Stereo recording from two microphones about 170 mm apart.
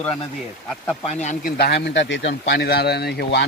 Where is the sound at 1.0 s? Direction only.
45° left (ahead or behind); by 2.3 s 90° left.